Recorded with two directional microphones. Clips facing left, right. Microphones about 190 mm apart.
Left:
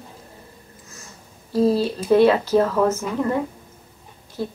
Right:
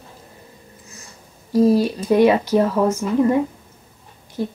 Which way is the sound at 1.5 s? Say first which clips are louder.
Right 3 dB; 15° right (ahead or behind).